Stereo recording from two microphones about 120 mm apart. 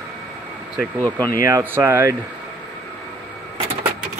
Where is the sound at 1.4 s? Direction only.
20° right (ahead or behind).